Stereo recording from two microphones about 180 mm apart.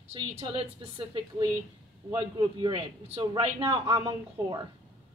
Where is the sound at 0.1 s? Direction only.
30° right (ahead or behind).